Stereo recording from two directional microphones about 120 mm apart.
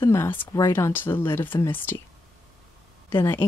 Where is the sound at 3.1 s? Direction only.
20° left (ahead or behind).